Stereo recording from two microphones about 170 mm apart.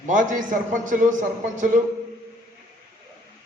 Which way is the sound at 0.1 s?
50° right (ahead or behind).